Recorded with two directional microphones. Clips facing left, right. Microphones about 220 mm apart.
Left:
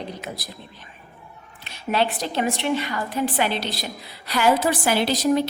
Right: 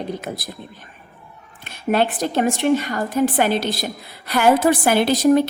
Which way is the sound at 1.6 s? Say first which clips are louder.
Right 4 dB; 50° right (ahead or behind).